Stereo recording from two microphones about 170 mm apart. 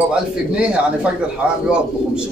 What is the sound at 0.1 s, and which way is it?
Speech, 5° right (ahead or behind).